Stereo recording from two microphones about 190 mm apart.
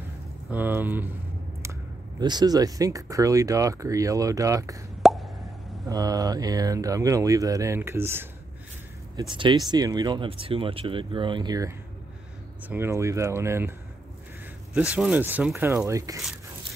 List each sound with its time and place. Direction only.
0.5 s speech: 10° right (ahead or behind)
5.0 s plop: centre (ahead or behind)
5.9 s speech: 20° right (ahead or behind)
9.1 s speech: 25° right (ahead or behind)
15.0 s speech: 10° right (ahead or behind)